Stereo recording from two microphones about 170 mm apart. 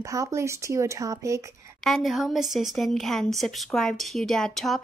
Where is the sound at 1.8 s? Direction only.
Centre (ahead or behind).